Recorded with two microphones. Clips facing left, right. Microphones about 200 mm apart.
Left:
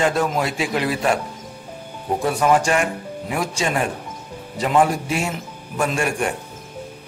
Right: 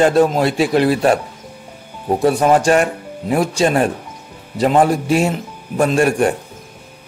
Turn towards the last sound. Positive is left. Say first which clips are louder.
# right 8 dB
turn(degrees=-35)  # may be behind; listen again after turning